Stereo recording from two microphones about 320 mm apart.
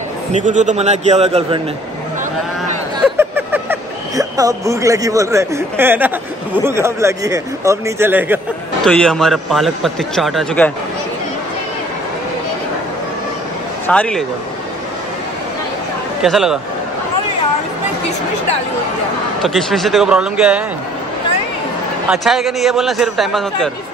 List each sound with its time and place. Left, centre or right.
0.3 s a man's voice: right
3.2 s a sound: centre
4.2 s a man's voice: centre
13.8 s a man's voice: centre
16.2 s a man's voice: centre
19.4 s a man's voice: centre
22.1 s a man's voice: centre